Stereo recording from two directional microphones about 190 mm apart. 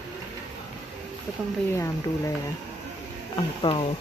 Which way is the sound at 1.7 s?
15° left (ahead or behind).